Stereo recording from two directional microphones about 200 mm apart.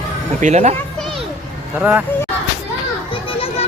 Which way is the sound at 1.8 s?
10° right (ahead or behind).